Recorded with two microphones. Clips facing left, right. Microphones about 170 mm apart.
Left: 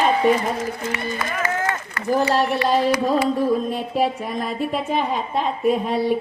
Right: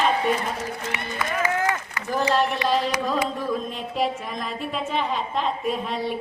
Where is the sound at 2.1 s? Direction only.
40° left (ahead or behind).